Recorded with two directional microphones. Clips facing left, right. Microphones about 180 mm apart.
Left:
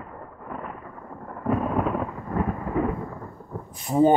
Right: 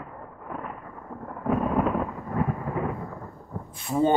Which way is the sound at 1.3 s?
Centre (ahead or behind).